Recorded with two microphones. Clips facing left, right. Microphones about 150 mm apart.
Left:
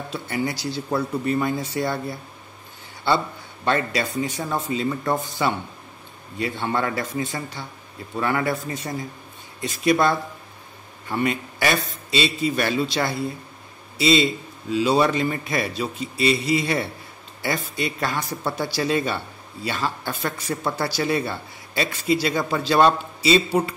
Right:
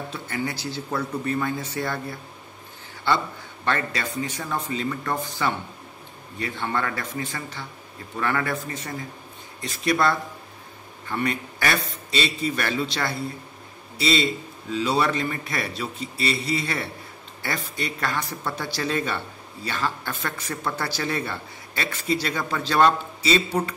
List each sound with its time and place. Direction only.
0.1 s speech: 10° left (ahead or behind)
3.6 s speech: 15° left (ahead or behind)